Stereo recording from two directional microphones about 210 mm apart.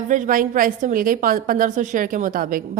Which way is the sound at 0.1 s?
40° right (ahead or behind).